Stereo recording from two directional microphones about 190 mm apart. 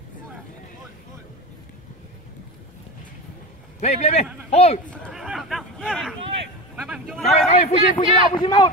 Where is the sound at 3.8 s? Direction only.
35° left (ahead or behind).